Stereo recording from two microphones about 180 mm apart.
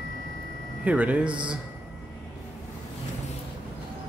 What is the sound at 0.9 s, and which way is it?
Speech, 10° right (ahead or behind).